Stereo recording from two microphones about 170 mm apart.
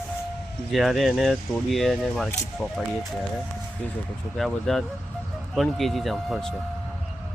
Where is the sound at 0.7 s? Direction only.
Centre (ahead or behind).